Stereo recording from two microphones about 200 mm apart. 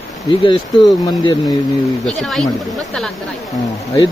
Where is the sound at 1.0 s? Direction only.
20° left (ahead or behind).